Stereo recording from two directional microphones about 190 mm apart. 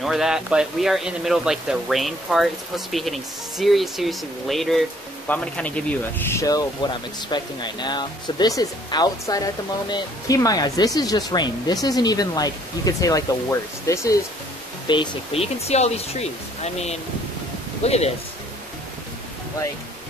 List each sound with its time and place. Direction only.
0.0 s speech: centre (ahead or behind); by 14.2 s 15° left (ahead or behind)
14.9 s speech: 30° left (ahead or behind)